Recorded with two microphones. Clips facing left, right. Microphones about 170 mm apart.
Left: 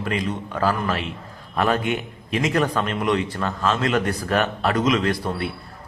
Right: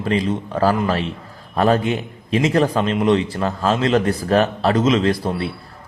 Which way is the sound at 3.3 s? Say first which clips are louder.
Right 4 dB; 35° right (ahead or behind).